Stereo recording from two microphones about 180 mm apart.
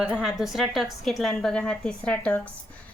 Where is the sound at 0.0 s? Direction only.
5° right (ahead or behind).